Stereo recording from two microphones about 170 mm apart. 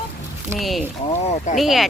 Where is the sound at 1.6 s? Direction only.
Centre (ahead or behind).